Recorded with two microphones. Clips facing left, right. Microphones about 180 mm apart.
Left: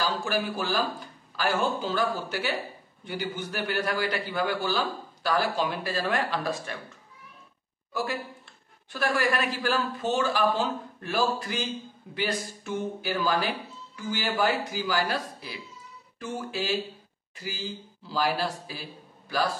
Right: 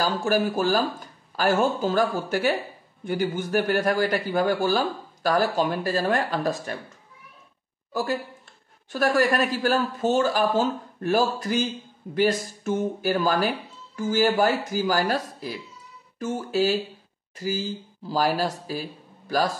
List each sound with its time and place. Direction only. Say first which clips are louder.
0.0 s a man's voice: right 5 dB; 45° right (ahead or behind)
7.9 s a man's voice: right 4 dB; 40° right (ahead or behind)
16.2 s music: right 8 dB; 40° right (ahead or behind)
17.4 s speech: right 8 dB; 45° right (ahead or behind)